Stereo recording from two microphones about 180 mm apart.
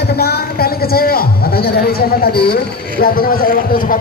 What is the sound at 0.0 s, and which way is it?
A man's voice, 60° left (ahead or behind).